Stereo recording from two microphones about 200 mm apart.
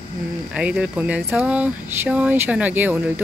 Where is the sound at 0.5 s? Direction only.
5° right (ahead or behind).